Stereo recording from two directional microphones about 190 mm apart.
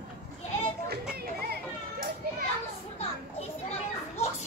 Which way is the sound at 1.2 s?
50° right (ahead or behind).